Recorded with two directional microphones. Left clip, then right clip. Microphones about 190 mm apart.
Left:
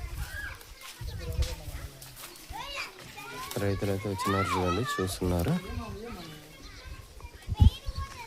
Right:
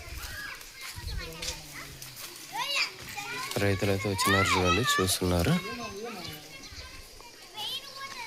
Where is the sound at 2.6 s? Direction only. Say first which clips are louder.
Right 8 dB; 50° left (ahead or behind).